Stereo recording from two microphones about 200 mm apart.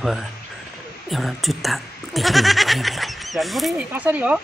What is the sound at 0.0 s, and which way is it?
Speech, centre (ahead or behind).